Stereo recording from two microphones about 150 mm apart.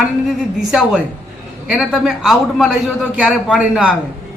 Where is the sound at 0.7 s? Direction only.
5° right (ahead or behind).